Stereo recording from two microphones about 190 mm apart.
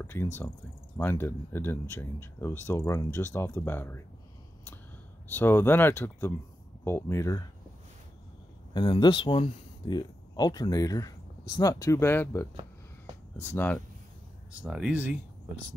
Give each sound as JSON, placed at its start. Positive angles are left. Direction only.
{"t": 0.0, "sound": "speech", "side_deg": 10}
{"t": 5.3, "sound": "speech", "side_deg": 10}
{"t": 8.7, "sound": "speech", "side_deg": 25}
{"t": 14.6, "sound": "speech", "side_deg": -5}